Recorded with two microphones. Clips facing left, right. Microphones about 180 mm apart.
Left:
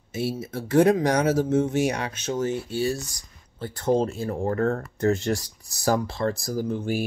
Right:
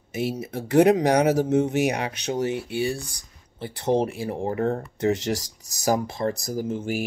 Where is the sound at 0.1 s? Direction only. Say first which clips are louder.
Right 1 dB; 15° right (ahead or behind).